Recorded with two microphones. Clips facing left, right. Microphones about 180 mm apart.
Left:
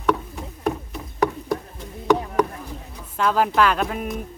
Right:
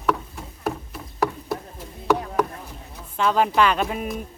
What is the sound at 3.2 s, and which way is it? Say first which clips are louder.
Speech: even; centre (ahead or behind).